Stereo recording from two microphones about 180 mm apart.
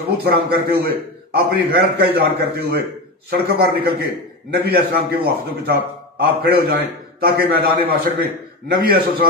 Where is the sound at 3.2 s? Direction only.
60° right (ahead or behind).